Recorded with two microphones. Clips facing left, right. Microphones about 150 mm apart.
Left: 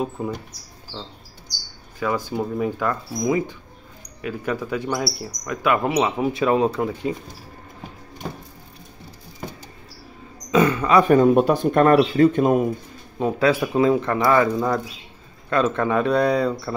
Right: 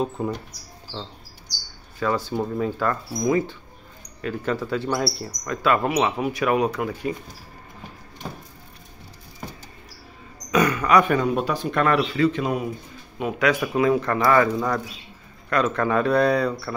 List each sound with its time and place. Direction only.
0.0 s speech: 5° left (ahead or behind)
2.0 s speech: 10° left (ahead or behind)
10.5 s a sound: 25° left (ahead or behind)
11.1 s speech: 50° left (ahead or behind)
13.2 s speech: 30° left (ahead or behind)